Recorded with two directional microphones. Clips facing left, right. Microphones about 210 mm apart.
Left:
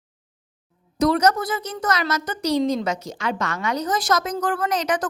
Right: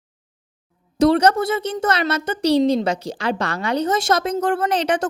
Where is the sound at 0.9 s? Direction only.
30° right (ahead or behind).